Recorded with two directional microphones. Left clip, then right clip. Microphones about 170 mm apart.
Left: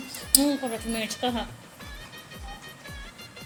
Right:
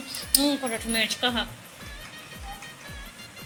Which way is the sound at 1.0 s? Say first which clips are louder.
Right 5 dB; 20° left (ahead or behind).